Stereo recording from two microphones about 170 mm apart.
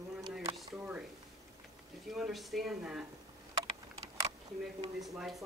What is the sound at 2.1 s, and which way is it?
Speech, centre (ahead or behind).